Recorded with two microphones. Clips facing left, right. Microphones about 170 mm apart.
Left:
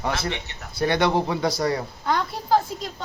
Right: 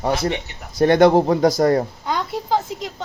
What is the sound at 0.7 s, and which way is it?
A man's voice, 45° right (ahead or behind).